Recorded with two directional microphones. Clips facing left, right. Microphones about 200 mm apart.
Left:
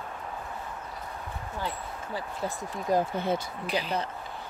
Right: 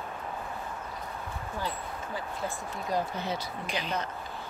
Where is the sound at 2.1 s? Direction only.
45° left (ahead or behind).